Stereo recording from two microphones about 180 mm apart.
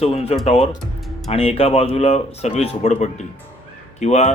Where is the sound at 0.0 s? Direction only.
35° left (ahead or behind).